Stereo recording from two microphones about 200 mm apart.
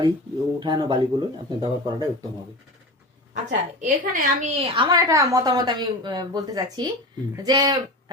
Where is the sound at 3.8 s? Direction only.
40° right (ahead or behind).